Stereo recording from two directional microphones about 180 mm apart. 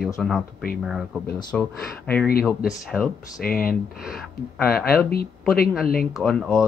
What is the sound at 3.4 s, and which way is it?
Speech, 55° left (ahead or behind).